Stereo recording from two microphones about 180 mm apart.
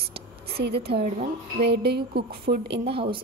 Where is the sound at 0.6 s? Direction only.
60° right (ahead or behind).